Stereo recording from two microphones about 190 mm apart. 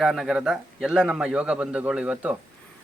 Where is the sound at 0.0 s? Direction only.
Centre (ahead or behind).